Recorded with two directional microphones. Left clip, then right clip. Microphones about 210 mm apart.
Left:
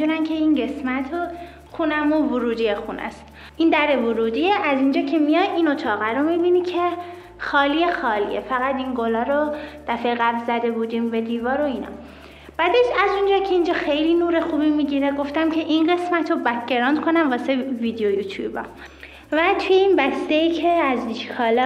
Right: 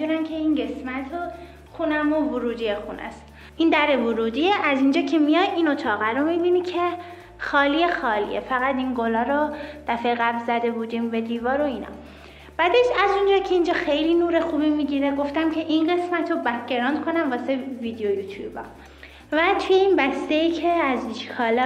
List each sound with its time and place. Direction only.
0.0 s a sound: 45° left (ahead or behind)
1.8 s a child's voice: 55° left (ahead or behind)
2.3 s speech: 35° left (ahead or behind)
3.5 s a woman's voice: centre (ahead or behind); by 18.6 s 35° left (ahead or behind)
19.3 s a woman's voice: 10° left (ahead or behind)